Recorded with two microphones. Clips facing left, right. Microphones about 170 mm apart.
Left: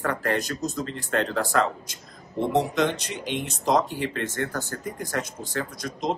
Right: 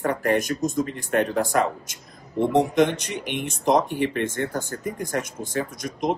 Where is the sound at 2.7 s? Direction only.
20° right (ahead or behind).